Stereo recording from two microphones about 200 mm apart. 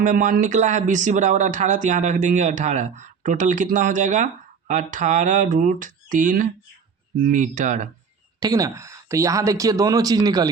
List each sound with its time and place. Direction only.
0.0 s speech: 40° right (ahead or behind)
8.4 s speech: 20° right (ahead or behind)